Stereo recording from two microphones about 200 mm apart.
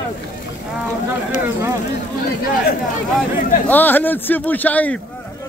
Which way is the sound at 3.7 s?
10° left (ahead or behind).